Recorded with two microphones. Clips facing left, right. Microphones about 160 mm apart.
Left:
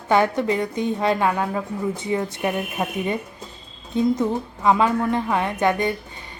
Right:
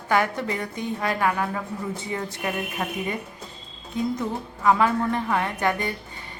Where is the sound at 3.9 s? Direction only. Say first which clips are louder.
Left 6 dB; 30° left (ahead or behind).